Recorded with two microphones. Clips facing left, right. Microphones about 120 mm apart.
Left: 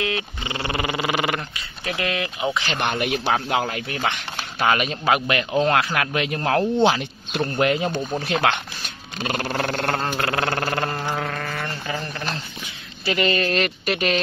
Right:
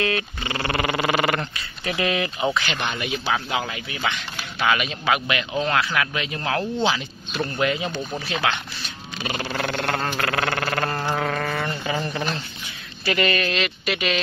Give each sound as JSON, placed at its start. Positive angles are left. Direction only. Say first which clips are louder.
{"t": 0.0, "sound": "a sound", "louder": "right 2 dB", "side_deg": 20}
{"t": 1.9, "sound": "speech", "louder": "right 2 dB", "side_deg": 0}
{"t": 3.0, "sound": "speech", "louder": "left 3 dB", "side_deg": 70}
{"t": 3.3, "sound": "speech", "louder": "left 3 dB", "side_deg": 45}
{"t": 10.1, "sound": "speech", "louder": "left 1 dB", "side_deg": 25}
{"t": 10.6, "sound": "sheep", "louder": "left 1 dB", "side_deg": 15}
{"t": 11.1, "sound": "mantra", "louder": "right 3 dB", "side_deg": 0}
{"t": 11.5, "sound": "a sound", "louder": "right 3 dB", "side_deg": -10}
{"t": 13.0, "sound": "speech", "louder": "left 1 dB", "side_deg": 25}
{"t": 13.5, "sound": "speech", "louder": "left 2 dB", "side_deg": 45}